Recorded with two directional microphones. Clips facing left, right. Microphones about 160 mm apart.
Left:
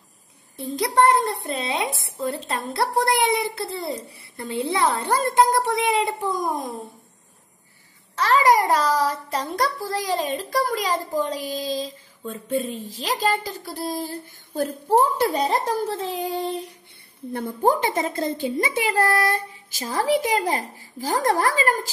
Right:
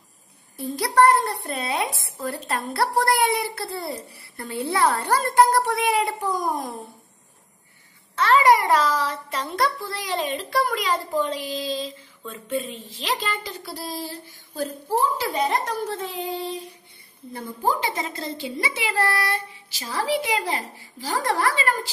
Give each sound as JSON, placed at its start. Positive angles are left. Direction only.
{"t": 0.6, "sound": "a child's voice", "side_deg": 20}
{"t": 8.2, "sound": "a child's voice", "side_deg": 40}
{"t": 14.5, "sound": "a woman's voice", "side_deg": 60}
{"t": 15.3, "sound": "a child's voice", "side_deg": 35}